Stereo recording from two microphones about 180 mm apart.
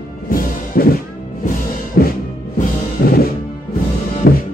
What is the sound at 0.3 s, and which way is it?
Music, 55° left (ahead or behind).